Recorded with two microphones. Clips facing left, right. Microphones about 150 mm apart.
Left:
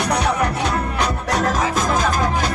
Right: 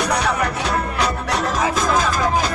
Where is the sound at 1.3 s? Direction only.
45° left (ahead or behind).